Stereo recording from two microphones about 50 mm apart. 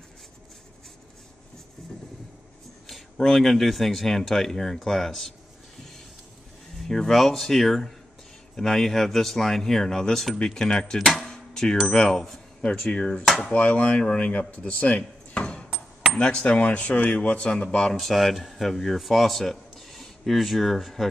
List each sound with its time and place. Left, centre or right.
2.9 s speech: centre
6.8 s speech: centre
11.1 s a sound: centre
11.9 s speech: centre; by 14.4 s left
14.6 s a sound: left
16.2 s speech: centre
17.7 s speech: centre